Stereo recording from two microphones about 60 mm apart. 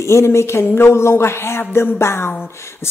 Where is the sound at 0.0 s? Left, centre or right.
Left.